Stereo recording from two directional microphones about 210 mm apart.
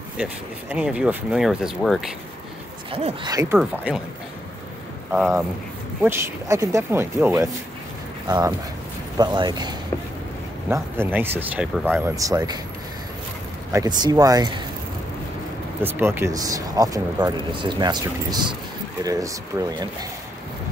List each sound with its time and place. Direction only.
0.2 s speech: 5° right (ahead or behind)
2.9 s speech: 30° right (ahead or behind)
3.5 s speech: 5° right (ahead or behind)
6.0 s speech: 15° right (ahead or behind)
13.7 s speech: 15° right (ahead or behind)
15.8 s speech: 10° right (ahead or behind)